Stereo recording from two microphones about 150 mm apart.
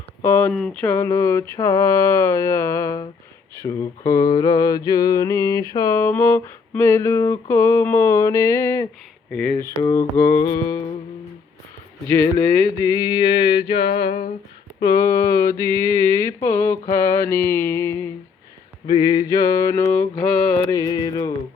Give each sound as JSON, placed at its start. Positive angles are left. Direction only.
{"t": 0.2, "sound": "speech", "side_deg": 15}
{"t": 0.5, "sound": "mantra", "side_deg": 5}
{"t": 12.0, "sound": "mantra", "side_deg": 15}
{"t": 14.0, "sound": "a sound", "side_deg": 45}
{"t": 14.8, "sound": "mantra", "side_deg": 25}
{"t": 18.9, "sound": "mantra", "side_deg": 30}